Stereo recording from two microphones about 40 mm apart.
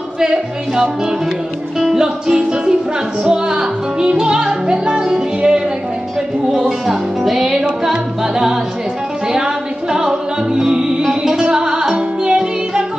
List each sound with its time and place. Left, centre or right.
0.2 s music: centre
6.9 s music: centre